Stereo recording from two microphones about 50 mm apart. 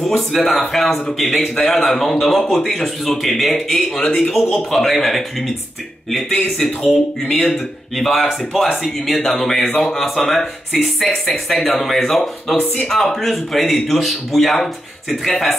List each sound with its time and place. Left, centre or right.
0.0 s speech: centre
6.9 s speech: centre